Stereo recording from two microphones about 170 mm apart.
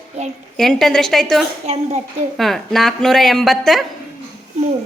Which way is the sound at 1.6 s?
40° right (ahead or behind).